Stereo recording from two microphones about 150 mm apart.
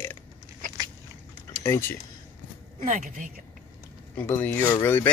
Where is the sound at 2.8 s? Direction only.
60° right (ahead or behind).